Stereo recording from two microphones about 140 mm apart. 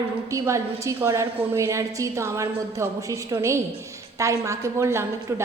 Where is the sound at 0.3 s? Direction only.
20° right (ahead or behind).